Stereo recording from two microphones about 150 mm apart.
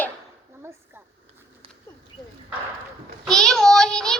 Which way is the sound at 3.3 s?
5° left (ahead or behind).